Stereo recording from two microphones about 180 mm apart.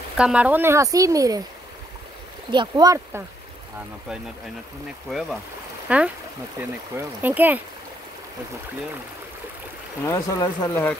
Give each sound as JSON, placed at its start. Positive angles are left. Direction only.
{"t": 0.2, "sound": "speech", "side_deg": -5}
{"t": 2.5, "sound": "speech", "side_deg": -25}
{"t": 5.9, "sound": "speech", "side_deg": -5}
{"t": 10.0, "sound": "speech", "side_deg": 20}